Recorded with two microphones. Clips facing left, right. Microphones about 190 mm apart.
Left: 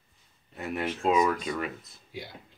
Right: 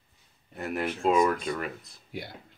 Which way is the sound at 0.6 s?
Centre (ahead or behind).